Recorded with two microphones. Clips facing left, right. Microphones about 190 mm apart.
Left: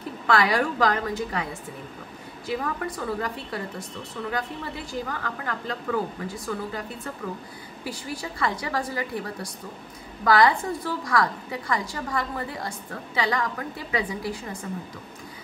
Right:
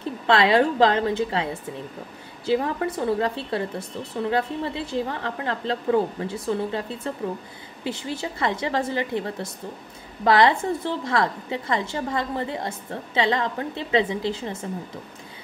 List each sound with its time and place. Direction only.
0.3 s a woman's voice: 25° right (ahead or behind)
7.8 s a woman's voice: 25° right (ahead or behind)